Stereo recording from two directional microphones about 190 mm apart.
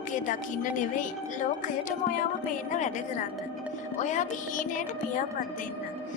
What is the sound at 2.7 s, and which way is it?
Speech, 40° left (ahead or behind).